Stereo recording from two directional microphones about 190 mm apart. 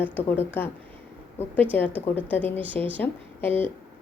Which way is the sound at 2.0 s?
10° left (ahead or behind).